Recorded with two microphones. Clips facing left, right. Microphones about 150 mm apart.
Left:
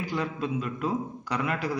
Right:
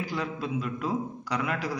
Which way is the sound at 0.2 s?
10° right (ahead or behind).